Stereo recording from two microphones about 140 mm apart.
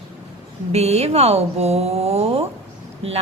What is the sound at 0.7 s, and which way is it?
A woman's voice, 50° right (ahead or behind).